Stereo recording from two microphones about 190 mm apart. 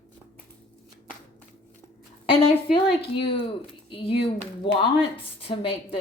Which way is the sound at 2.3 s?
30° left (ahead or behind).